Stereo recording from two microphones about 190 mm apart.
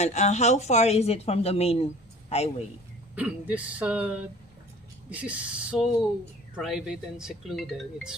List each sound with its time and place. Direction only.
0.0 s speech: 35° left (ahead or behind)
3.2 s speech: 5° right (ahead or behind)